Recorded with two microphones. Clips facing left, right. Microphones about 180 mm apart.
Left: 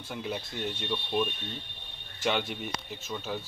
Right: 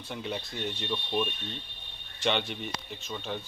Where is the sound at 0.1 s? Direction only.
5° left (ahead or behind).